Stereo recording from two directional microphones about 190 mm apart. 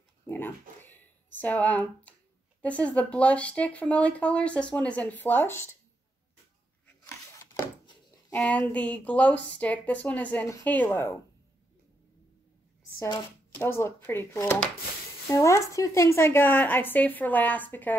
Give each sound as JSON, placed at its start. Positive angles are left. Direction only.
{"t": 0.3, "sound": "a sound", "side_deg": 10}
{"t": 2.6, "sound": "speech", "side_deg": 5}
{"t": 8.3, "sound": "speech", "side_deg": 5}
{"t": 13.0, "sound": "speech", "side_deg": 15}